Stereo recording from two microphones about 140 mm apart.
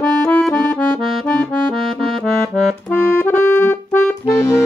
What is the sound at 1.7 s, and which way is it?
Accordion, centre (ahead or behind).